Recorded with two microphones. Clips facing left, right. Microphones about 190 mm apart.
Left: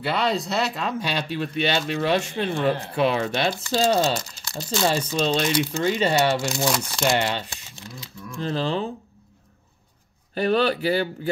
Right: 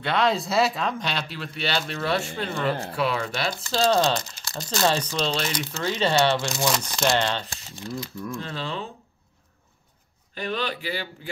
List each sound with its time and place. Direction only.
0.0 s speech: centre (ahead or behind); by 3.8 s 25° left (ahead or behind)
4.5 s speech: 5° left (ahead or behind)
8.5 s speech: 35° left (ahead or behind)
10.3 s speech: 40° left (ahead or behind)